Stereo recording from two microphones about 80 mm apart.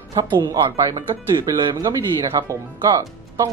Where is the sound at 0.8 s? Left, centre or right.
Right.